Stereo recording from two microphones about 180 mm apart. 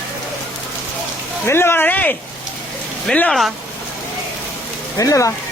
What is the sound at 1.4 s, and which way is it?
Speech, 15° left (ahead or behind).